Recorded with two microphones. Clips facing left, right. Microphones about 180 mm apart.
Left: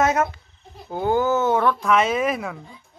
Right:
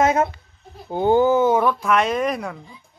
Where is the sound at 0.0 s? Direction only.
25° right (ahead or behind); by 2.5 s 5° left (ahead or behind).